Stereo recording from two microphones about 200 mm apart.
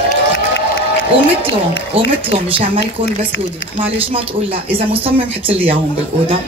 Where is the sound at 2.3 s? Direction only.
25° right (ahead or behind).